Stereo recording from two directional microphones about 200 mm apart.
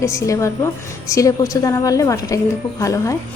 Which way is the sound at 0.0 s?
15° left (ahead or behind).